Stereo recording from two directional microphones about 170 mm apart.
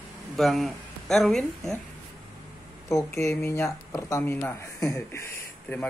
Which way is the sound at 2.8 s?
15° left (ahead or behind).